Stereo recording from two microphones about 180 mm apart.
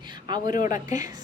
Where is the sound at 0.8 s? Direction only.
20° right (ahead or behind).